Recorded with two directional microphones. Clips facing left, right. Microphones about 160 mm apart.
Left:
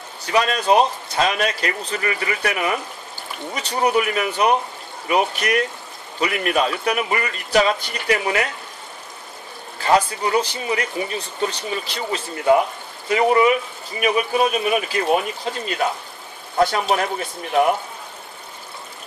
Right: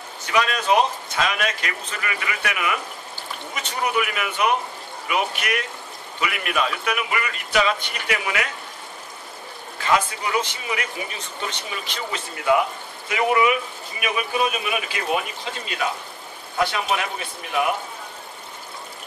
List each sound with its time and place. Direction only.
0.3 s speech: 35° left (ahead or behind)
9.8 s speech: 35° left (ahead or behind)
16.5 s speech: 40° left (ahead or behind)